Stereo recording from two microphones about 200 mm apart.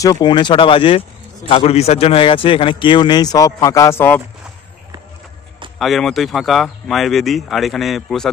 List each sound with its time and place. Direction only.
0.0 s a man's voice: 20° left (ahead or behind)
5.8 s speech: centre (ahead or behind)